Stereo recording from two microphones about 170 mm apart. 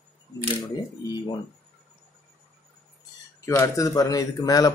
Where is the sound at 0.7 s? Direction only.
25° left (ahead or behind).